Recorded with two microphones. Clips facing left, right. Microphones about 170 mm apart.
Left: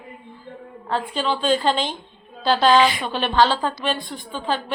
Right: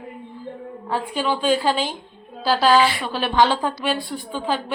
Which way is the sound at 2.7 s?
20° left (ahead or behind).